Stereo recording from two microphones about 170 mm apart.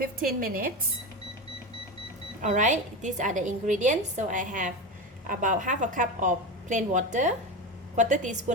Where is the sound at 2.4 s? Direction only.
50° right (ahead or behind).